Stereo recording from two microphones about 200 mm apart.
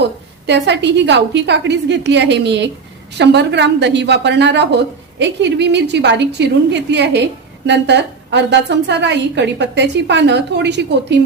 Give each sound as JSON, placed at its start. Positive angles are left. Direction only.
{"t": 0.4, "sound": "a woman's voice", "side_deg": -60}